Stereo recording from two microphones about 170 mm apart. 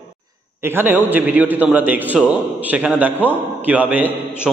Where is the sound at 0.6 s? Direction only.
10° right (ahead or behind).